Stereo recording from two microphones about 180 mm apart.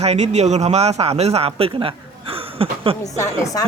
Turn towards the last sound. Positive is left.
turn(degrees=20)  # may be behind; listen again after turning